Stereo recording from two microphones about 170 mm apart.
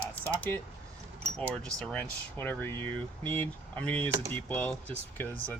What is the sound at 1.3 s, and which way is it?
Speech, 5° left (ahead or behind).